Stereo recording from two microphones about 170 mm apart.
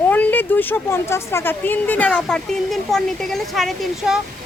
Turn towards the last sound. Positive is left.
turn(degrees=0)  # may be behind; listen again after turning